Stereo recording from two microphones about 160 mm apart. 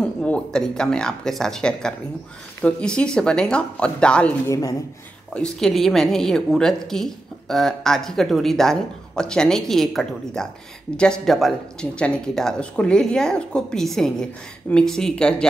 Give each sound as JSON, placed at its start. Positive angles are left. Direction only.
{"t": 0.0, "sound": "a woman's voice", "side_deg": 5}
{"t": 4.5, "sound": "speech", "side_deg": 20}
{"t": 5.3, "sound": "a woman's voice", "side_deg": 5}